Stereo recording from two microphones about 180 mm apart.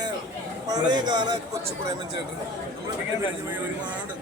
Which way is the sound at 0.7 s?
25° right (ahead or behind).